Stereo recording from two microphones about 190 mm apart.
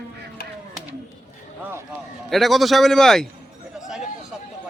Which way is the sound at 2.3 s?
Centre (ahead or behind).